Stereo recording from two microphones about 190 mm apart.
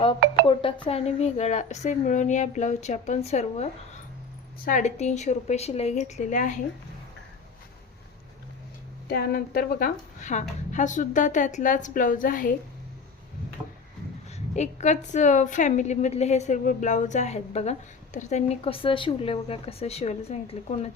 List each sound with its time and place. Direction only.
0.9 s a woman's voice: 35° left (ahead or behind)
9.0 s speech: 55° left (ahead or behind)
14.3 s a woman's voice: 35° left (ahead or behind)